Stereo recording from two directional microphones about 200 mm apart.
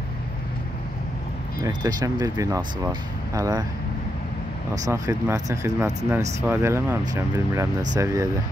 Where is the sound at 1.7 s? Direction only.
20° right (ahead or behind).